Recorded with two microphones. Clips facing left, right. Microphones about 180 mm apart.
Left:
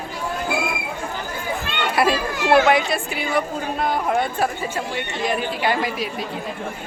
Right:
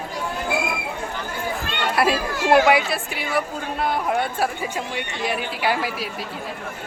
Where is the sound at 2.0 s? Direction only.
Centre (ahead or behind).